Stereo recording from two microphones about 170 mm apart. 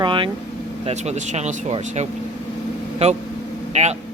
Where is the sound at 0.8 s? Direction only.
40° right (ahead or behind).